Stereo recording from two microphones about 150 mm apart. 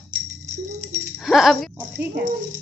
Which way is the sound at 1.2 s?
Centre (ahead or behind).